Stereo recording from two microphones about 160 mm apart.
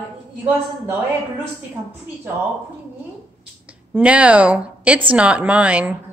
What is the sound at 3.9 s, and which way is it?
A woman's voice, 10° right (ahead or behind).